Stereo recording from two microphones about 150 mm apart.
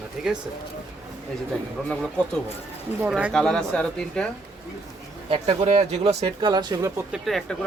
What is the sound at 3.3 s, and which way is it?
Speech, 5° left (ahead or behind).